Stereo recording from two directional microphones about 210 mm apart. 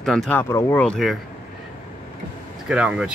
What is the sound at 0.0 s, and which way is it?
Speech, centre (ahead or behind).